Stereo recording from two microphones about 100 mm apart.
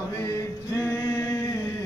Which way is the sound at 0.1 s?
30° left (ahead or behind).